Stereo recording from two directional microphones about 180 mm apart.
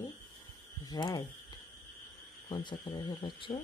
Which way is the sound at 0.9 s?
25° left (ahead or behind).